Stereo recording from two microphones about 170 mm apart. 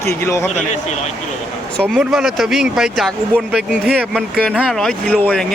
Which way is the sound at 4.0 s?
10° right (ahead or behind).